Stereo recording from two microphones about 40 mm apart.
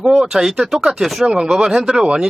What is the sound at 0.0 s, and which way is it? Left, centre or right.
Speech, centre.